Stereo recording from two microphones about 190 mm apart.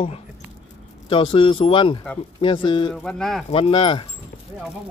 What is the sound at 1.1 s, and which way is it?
Speech, 25° left (ahead or behind).